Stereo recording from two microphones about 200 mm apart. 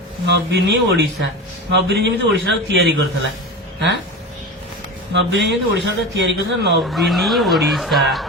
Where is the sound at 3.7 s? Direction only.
60° right (ahead or behind).